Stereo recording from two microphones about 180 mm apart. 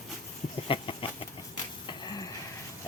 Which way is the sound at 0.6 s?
30° left (ahead or behind).